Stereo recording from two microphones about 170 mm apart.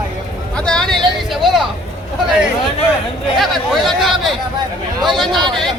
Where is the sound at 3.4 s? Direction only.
Centre (ahead or behind).